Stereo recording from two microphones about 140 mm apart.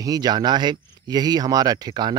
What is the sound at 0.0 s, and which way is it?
Speech, 30° right (ahead or behind).